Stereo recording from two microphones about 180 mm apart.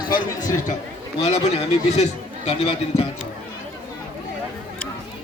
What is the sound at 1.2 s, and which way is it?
Speech, 35° left (ahead or behind).